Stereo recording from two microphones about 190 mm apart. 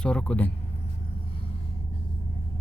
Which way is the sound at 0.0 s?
5° left (ahead or behind).